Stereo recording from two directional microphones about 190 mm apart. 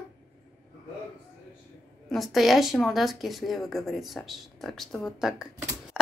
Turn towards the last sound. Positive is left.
turn(degrees=0)  # may be behind; listen again after turning